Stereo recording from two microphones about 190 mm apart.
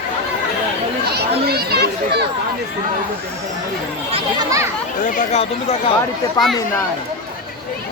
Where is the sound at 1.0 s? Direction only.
55° right (ahead or behind).